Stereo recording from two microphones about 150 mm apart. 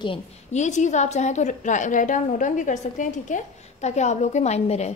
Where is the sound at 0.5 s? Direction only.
50° left (ahead or behind).